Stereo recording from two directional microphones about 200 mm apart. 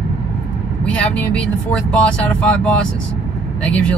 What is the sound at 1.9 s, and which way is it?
Speech, 5° left (ahead or behind).